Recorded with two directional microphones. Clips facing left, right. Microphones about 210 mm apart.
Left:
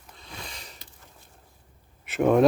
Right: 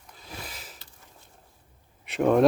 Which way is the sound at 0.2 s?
5° right (ahead or behind).